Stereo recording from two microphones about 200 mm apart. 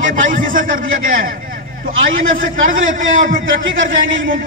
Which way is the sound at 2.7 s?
40° right (ahead or behind).